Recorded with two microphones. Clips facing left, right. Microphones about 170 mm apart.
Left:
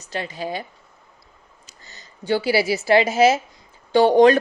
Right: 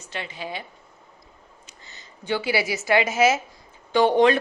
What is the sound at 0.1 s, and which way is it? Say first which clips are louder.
Speech: left 5 dB; 40° left (ahead or behind).